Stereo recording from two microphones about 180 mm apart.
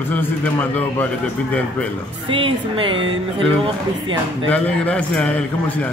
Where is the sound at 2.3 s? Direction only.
30° right (ahead or behind).